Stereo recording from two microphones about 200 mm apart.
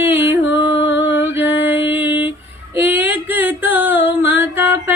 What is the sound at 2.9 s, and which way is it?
Music, 10° right (ahead or behind).